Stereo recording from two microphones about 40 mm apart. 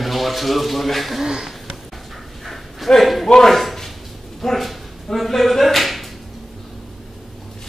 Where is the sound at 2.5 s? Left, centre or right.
Centre.